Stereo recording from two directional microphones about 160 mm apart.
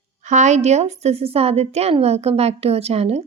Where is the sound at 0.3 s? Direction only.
45° right (ahead or behind).